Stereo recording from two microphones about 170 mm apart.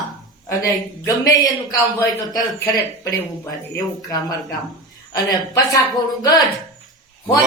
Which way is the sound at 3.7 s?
20° left (ahead or behind).